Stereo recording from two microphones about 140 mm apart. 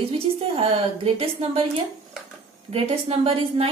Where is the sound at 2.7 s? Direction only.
45° right (ahead or behind).